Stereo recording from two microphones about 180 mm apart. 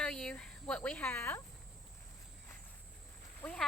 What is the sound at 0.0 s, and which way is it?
Cricket, 5° left (ahead or behind).